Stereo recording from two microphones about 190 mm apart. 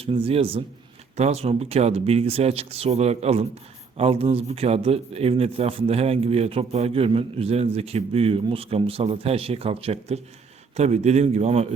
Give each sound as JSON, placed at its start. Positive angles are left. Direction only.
{"t": 0.0, "sound": "speech", "side_deg": -30}